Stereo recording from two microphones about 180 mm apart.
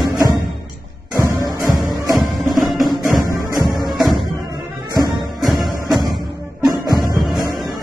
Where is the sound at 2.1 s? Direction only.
Centre (ahead or behind).